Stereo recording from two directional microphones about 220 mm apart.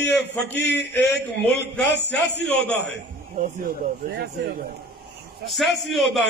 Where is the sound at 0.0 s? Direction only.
10° left (ahead or behind).